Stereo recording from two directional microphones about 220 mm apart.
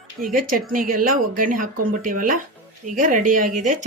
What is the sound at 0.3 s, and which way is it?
Speech, 40° right (ahead or behind).